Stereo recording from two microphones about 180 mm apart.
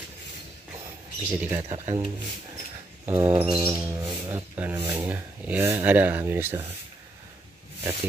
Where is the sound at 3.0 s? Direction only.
15° right (ahead or behind).